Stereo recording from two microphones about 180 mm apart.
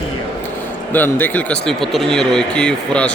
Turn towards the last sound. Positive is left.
turn(degrees=5)  # may be behind; listen again after turning